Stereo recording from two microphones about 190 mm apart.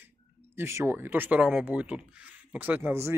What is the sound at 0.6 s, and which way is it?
Speech, 15° right (ahead or behind).